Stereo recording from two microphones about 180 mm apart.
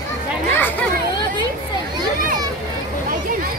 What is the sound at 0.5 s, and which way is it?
Speech, 10° left (ahead or behind).